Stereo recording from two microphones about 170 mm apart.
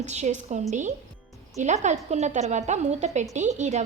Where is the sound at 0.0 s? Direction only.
40° right (ahead or behind).